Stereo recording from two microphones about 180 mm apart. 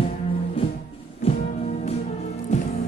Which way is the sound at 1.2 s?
35° left (ahead or behind).